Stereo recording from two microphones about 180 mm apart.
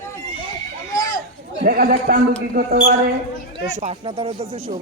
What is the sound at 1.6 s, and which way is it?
A man's voice, 55° right (ahead or behind).